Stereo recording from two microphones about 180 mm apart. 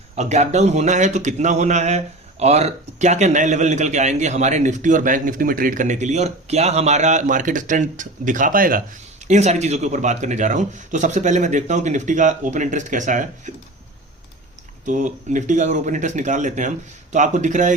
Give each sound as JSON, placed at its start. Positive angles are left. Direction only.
{"t": 0.2, "sound": "a man's voice", "side_deg": -40}
{"t": 9.2, "sound": "a man's voice", "side_deg": -40}
{"t": 14.8, "sound": "a man's voice", "side_deg": -45}